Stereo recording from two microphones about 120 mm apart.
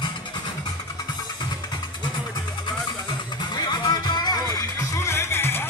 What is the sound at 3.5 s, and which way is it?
Music, 35° left (ahead or behind).